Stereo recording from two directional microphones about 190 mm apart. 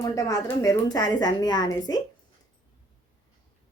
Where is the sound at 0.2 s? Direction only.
20° left (ahead or behind).